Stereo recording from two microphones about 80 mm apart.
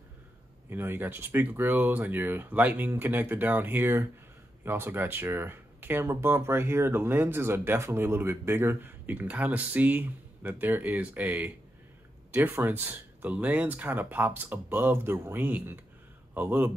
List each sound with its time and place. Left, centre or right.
0.7 s speech: right